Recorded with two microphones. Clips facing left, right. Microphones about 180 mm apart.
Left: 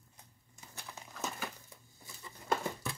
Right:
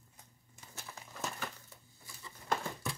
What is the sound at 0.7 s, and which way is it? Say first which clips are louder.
Crumpling: left 1 dB; centre (ahead or behind).